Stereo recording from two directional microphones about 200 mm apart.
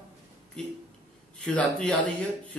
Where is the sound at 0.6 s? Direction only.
5° left (ahead or behind).